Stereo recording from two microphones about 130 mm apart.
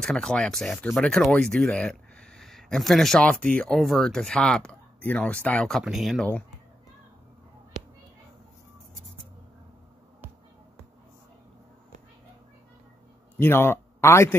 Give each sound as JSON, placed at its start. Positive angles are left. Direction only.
{"t": 0.0, "sound": "speech", "side_deg": 5}
{"t": 13.4, "sound": "speech", "side_deg": 15}